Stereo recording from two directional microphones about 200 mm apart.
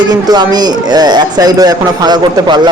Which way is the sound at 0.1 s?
20° right (ahead or behind).